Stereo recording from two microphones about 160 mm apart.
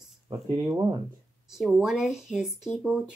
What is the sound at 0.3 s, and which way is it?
Speech, 25° right (ahead or behind).